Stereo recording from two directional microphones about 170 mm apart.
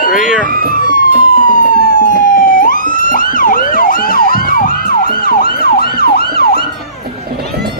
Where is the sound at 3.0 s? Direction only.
55° left (ahead or behind).